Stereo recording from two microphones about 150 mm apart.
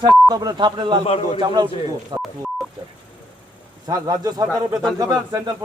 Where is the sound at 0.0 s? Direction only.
25° right (ahead or behind).